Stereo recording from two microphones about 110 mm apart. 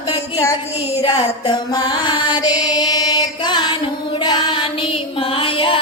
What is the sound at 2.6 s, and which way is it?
Chant, 35° left (ahead or behind).